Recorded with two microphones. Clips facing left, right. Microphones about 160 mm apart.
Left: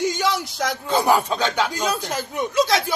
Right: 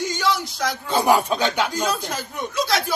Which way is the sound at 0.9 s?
10° right (ahead or behind).